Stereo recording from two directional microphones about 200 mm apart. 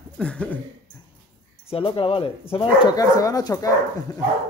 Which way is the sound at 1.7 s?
25° left (ahead or behind).